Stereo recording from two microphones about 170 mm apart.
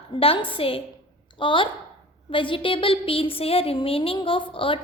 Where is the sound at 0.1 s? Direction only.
30° left (ahead or behind).